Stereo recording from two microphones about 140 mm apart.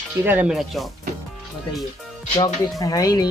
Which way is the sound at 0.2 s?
10° right (ahead or behind).